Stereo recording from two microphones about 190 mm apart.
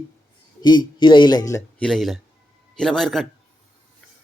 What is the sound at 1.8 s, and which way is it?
A man's voice, centre (ahead or behind).